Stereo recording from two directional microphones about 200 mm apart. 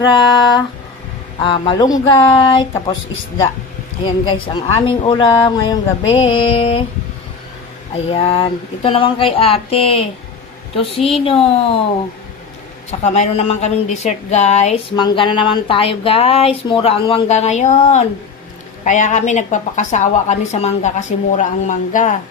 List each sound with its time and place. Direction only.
0.0 s speech: 20° left (ahead or behind)
4.0 s speech: 25° left (ahead or behind)
8.1 s speech: 30° left (ahead or behind)
12.9 s a woman's voice: 35° left (ahead or behind)